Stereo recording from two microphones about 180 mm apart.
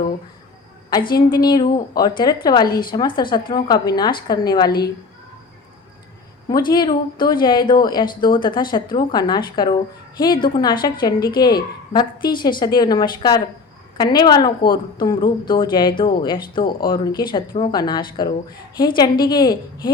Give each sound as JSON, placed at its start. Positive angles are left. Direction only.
{"t": 1.3, "sound": "speech", "side_deg": 25}
{"t": 6.5, "sound": "speech", "side_deg": 25}